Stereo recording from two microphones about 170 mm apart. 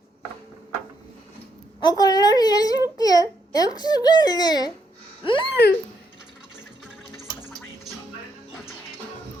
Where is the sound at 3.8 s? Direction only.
25° left (ahead or behind).